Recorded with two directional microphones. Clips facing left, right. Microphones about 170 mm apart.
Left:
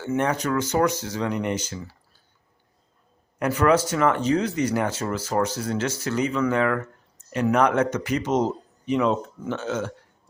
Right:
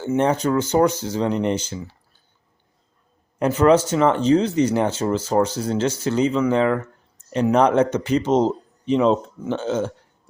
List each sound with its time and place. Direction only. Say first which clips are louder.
0.0 s speech: right 5 dB; 30° right (ahead or behind)
3.3 s a man's voice: right 4 dB; 25° right (ahead or behind)